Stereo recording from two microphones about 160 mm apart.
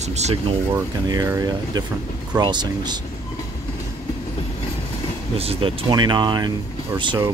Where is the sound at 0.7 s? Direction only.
25° right (ahead or behind).